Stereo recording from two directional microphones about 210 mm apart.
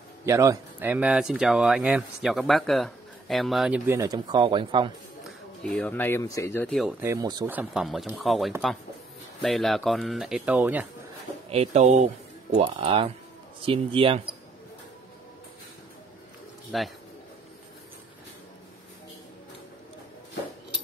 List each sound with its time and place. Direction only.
0.2 s speech: 15° right (ahead or behind)
5.6 s speech: 5° left (ahead or behind); by 7.5 s 20° right (ahead or behind)
7.5 s speech: centre (ahead or behind)
11.4 s speech: 30° right (ahead or behind)
16.7 s speech: centre (ahead or behind)